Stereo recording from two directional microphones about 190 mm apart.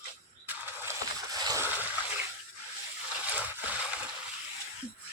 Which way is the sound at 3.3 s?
10° right (ahead or behind).